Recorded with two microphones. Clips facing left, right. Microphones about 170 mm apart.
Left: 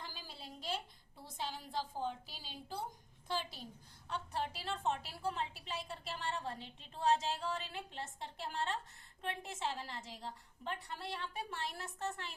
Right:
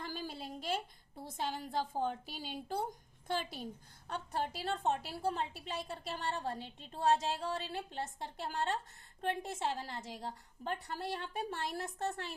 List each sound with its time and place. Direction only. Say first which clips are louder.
0.0 s a woman's voice: right 8 dB; 55° right (ahead or behind)
4.1 s a woman's voice: right 2 dB; 45° right (ahead or behind)